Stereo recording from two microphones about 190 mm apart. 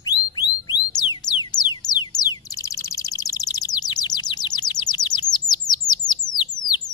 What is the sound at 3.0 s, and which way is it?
Bird, 20° left (ahead or behind).